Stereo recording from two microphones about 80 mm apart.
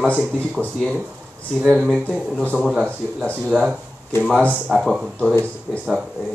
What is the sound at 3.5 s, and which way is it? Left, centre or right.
Speech, centre.